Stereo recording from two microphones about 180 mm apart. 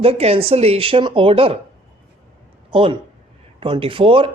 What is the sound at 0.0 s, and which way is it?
Speech, 35° right (ahead or behind).